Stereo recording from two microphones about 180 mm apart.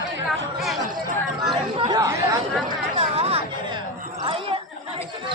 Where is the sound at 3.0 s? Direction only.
35° right (ahead or behind).